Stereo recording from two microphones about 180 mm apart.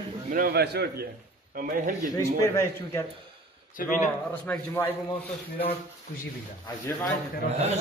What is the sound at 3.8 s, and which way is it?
Speech, 55° left (ahead or behind).